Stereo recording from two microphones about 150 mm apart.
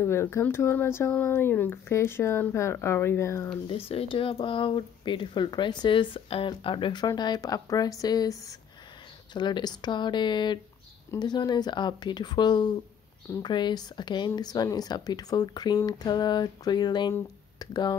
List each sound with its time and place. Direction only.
0.0 s speech: 15° left (ahead or behind)
3.6 s speech: 40° left (ahead or behind)